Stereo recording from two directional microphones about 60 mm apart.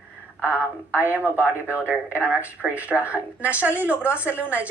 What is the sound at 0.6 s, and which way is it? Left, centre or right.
Speech, right.